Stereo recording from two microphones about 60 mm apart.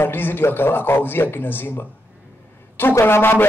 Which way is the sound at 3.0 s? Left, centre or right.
Left.